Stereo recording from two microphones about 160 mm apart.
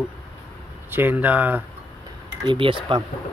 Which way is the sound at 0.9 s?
10° right (ahead or behind).